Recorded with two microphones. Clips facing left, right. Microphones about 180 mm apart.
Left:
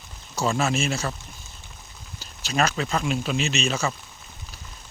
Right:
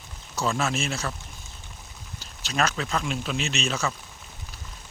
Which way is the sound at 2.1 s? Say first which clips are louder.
Left 2 dB; 5° left (ahead or behind).